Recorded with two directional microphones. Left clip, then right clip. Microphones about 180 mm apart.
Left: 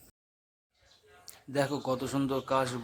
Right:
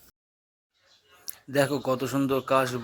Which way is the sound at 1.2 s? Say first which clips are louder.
Right 6 dB; 15° right (ahead or behind).